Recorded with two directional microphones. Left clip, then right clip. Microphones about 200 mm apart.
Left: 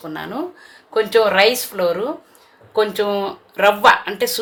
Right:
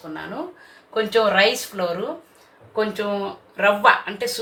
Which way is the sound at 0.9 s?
35° left (ahead or behind).